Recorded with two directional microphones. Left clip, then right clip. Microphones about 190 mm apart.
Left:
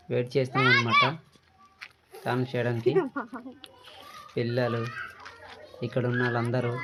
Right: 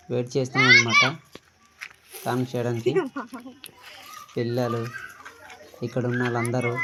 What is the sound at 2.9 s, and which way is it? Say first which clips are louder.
Speech: right 1 dB; 15° right (ahead or behind).